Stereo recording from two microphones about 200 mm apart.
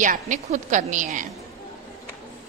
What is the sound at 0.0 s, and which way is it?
A woman's voice, 40° right (ahead or behind).